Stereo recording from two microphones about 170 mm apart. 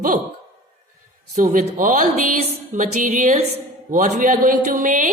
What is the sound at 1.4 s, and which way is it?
A woman's voice, 50° right (ahead or behind).